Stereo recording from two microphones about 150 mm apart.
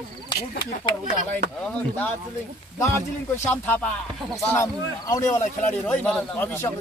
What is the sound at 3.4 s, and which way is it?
A man's voice, 10° left (ahead or behind).